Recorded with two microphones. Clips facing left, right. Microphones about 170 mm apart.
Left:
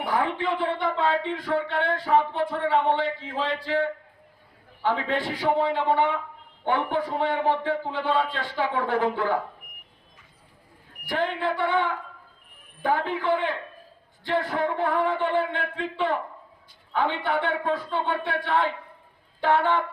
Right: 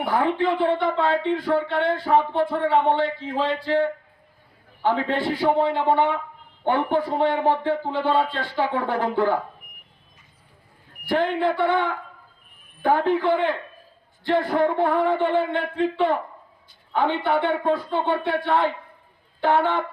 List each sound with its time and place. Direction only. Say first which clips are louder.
0.0 s a man's voice: right 4 dB; 40° right (ahead or behind)
11.1 s a man's voice: right 5 dB; 40° right (ahead or behind)
12.8 s a man's voice: right 5 dB; 40° right (ahead or behind)